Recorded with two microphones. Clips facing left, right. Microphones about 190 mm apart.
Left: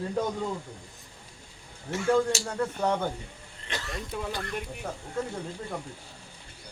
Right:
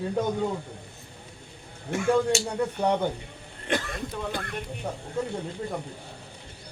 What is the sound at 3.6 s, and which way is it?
Speech, 55° right (ahead or behind).